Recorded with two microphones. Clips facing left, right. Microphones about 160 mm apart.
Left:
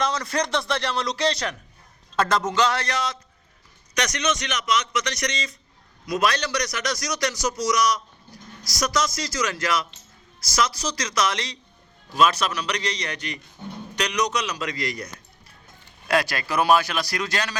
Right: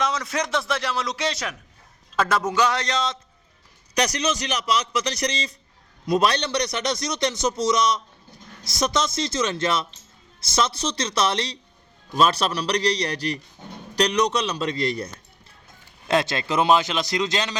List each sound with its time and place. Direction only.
0.0 s speech: centre (ahead or behind); by 3.2 s 20° right (ahead or behind)
3.9 s a man's voice: 35° right (ahead or behind)